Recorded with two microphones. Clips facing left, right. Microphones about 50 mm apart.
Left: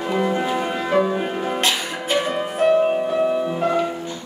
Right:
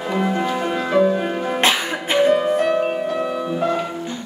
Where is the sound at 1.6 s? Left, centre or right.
Right.